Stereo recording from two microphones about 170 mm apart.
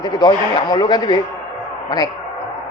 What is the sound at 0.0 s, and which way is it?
A man's voice, 25° left (ahead or behind).